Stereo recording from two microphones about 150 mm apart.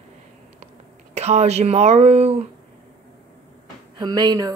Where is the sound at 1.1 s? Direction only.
45° right (ahead or behind).